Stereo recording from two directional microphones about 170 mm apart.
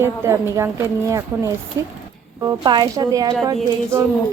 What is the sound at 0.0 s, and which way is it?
A woman's voice, 15° right (ahead or behind).